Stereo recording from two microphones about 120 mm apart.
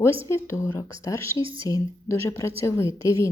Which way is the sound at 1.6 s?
25° left (ahead or behind).